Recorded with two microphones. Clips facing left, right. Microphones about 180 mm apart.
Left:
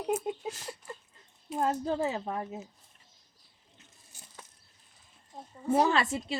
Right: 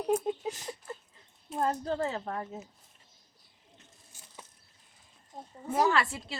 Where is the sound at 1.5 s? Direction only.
5° left (ahead or behind).